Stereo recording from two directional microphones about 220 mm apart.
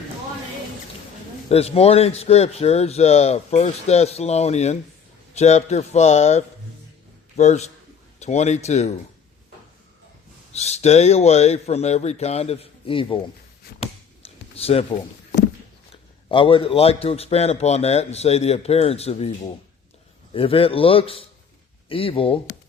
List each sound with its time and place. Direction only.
1.5 s a man's voice: 25° left (ahead or behind)
10.5 s a man's voice: 30° left (ahead or behind)
14.2 s a sound: 25° left (ahead or behind)
15.9 s a man's voice: 25° left (ahead or behind)
20.3 s a man's voice: 25° left (ahead or behind)